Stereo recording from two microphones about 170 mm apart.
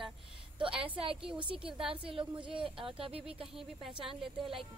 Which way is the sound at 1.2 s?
30° right (ahead or behind).